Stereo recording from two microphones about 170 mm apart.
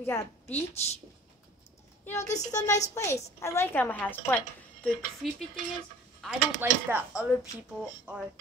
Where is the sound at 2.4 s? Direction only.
20° left (ahead or behind).